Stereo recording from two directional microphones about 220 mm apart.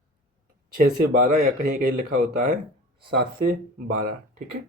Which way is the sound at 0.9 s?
45° right (ahead or behind).